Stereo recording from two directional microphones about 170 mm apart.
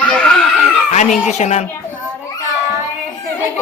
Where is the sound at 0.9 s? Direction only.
45° left (ahead or behind).